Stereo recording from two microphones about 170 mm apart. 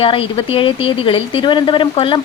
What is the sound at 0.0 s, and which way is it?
Speech, 30° left (ahead or behind).